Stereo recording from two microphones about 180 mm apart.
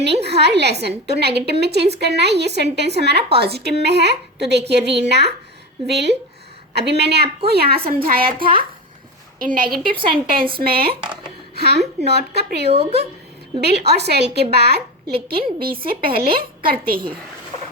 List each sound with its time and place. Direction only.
0.0 s a woman's voice: 70° right (ahead or behind); by 9.6 s 50° right (ahead or behind)
9.9 s a woman's voice: 30° right (ahead or behind)
10.6 s a woman's voice: 60° right (ahead or behind)